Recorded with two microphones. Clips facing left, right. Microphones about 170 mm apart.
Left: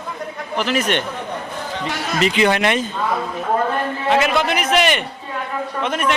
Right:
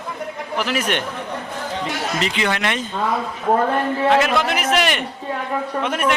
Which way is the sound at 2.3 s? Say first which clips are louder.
Left 5 dB; 15° left (ahead or behind).